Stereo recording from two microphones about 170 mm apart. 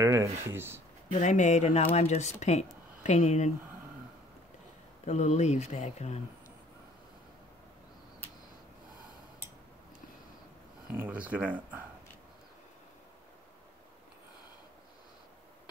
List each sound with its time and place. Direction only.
0.0 s speech: 15° right (ahead or behind)
1.2 s speech: 45° left (ahead or behind)
5.0 s speech: 40° left (ahead or behind)
10.9 s speech: 10° right (ahead or behind)